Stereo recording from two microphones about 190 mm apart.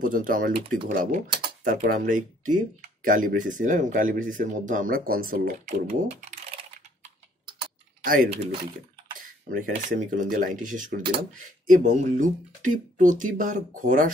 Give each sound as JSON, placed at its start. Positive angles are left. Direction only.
{"t": 0.0, "sound": "speech", "side_deg": -45}
{"t": 8.0, "sound": "speech", "side_deg": -50}